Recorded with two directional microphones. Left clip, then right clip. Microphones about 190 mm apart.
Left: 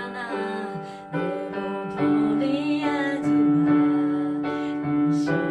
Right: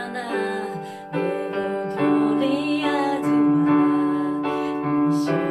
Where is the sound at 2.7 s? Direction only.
5° right (ahead or behind).